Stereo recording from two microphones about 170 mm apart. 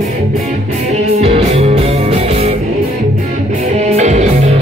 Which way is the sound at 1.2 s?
35° right (ahead or behind).